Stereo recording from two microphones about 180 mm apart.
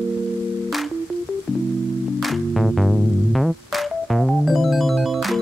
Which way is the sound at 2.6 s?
Centre (ahead or behind).